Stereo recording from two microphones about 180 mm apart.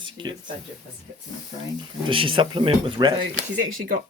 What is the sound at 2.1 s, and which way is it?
Speech, 30° right (ahead or behind).